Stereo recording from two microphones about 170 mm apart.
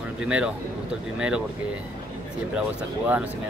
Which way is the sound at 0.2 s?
5° right (ahead or behind).